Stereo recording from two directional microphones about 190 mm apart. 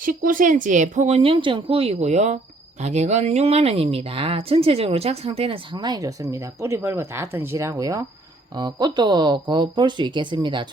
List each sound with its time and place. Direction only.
0.0 s speech: 45° right (ahead or behind); by 10.7 s 25° right (ahead or behind)